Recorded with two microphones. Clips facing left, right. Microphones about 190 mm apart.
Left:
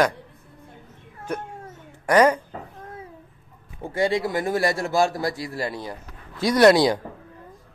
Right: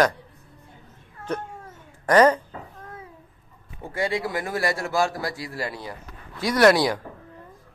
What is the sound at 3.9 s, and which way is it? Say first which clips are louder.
Speech: left 4 dB; 25° left (ahead or behind).